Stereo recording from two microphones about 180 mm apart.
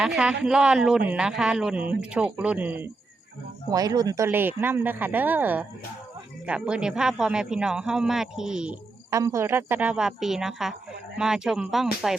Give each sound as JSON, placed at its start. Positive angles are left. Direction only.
{"t": 0.0, "sound": "a man's voice", "side_deg": -5}
{"t": 3.7, "sound": "a man's voice", "side_deg": -20}
{"t": 9.0, "sound": "a man's voice", "side_deg": -15}